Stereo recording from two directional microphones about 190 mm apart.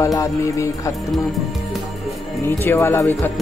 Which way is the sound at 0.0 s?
15° left (ahead or behind).